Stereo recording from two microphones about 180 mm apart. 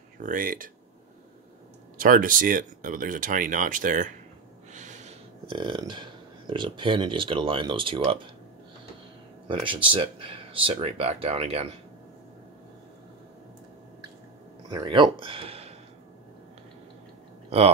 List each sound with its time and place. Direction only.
0.2 s speech: 50° right (ahead or behind)
2.0 s speech: 50° right (ahead or behind)
4.7 s snort: 40° right (ahead or behind)
5.5 s speech: 30° right (ahead or behind)
9.5 s speech: 30° right (ahead or behind)
14.7 s speech: 25° right (ahead or behind)